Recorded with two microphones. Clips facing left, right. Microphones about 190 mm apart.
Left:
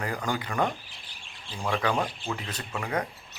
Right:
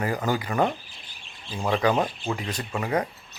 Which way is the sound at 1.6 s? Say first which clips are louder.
Right 5 dB; 20° right (ahead or behind).